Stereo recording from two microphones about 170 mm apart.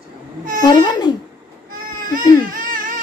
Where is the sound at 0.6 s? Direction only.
25° left (ahead or behind).